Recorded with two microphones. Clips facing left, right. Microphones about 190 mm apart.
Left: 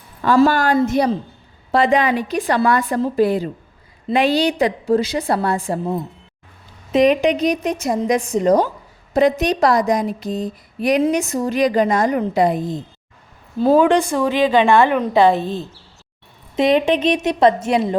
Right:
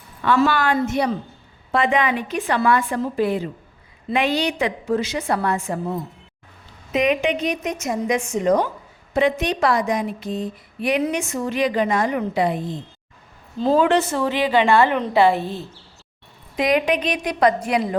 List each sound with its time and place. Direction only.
0.2 s speech: 40° left (ahead or behind)
6.9 s speech: 35° left (ahead or behind)
13.6 s a woman's voice: 10° left (ahead or behind)